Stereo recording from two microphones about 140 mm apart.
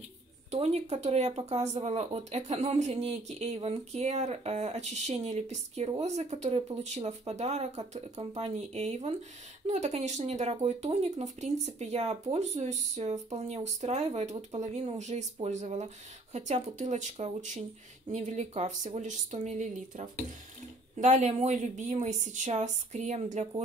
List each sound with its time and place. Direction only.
0.5 s a woman's voice: 50° right (ahead or behind)